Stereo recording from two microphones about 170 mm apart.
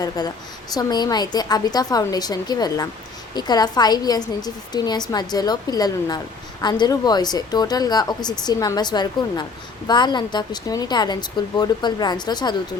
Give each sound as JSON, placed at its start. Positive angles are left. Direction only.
{"t": 0.2, "sound": "a woman's voice", "side_deg": 25}